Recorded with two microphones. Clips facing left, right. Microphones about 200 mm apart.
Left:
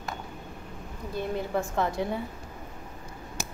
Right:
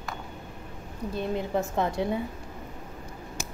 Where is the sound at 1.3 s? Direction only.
20° right (ahead or behind).